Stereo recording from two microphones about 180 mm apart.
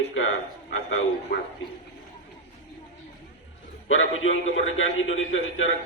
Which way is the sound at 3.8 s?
90° left.